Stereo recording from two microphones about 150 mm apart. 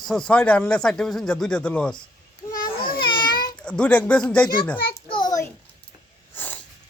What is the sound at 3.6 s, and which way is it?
A child's voice, 5° left (ahead or behind).